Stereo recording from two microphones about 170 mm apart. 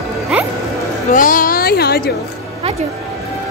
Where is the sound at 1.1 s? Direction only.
50° left (ahead or behind).